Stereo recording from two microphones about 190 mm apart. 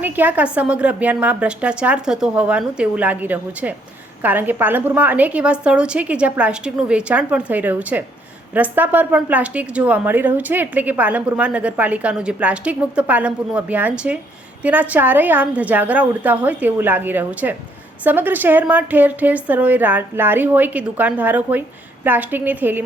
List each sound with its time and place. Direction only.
0.0 s speech: 10° right (ahead or behind)